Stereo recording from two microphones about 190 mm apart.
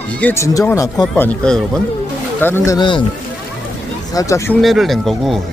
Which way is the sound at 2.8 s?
25° left (ahead or behind).